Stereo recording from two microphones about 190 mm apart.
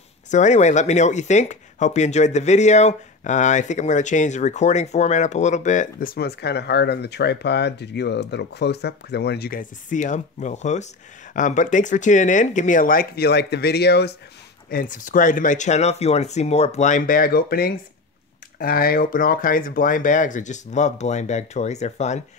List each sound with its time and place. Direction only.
0.3 s speech: 40° left (ahead or behind); by 14.1 s 60° left (ahead or behind)
14.7 s speech: 45° left (ahead or behind)